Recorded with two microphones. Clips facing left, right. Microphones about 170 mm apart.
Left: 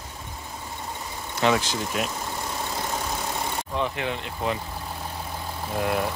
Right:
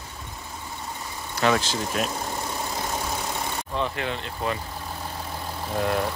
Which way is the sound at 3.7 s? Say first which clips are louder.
Even; 15° left (ahead or behind).